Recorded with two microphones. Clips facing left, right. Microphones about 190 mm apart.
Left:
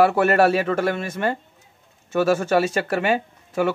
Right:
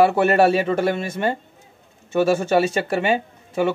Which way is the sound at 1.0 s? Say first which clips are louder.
Right 1 dB; 30° right (ahead or behind).